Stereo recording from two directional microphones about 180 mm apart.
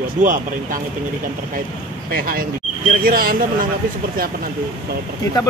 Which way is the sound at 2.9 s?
50° right (ahead or behind).